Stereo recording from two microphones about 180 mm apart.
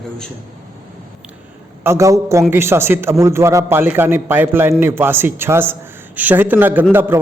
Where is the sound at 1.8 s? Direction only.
15° right (ahead or behind).